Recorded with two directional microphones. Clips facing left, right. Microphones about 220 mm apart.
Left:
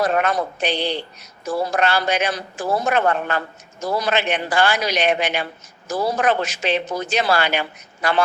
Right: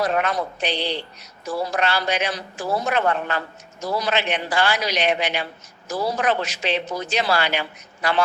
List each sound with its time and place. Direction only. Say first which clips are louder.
0.0 s a woman's voice: left 2 dB; 50° left (ahead or behind)